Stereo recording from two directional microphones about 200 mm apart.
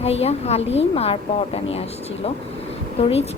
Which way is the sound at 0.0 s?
30° left (ahead or behind).